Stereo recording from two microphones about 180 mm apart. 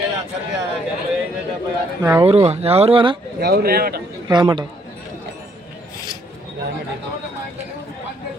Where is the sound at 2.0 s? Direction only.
20° right (ahead or behind).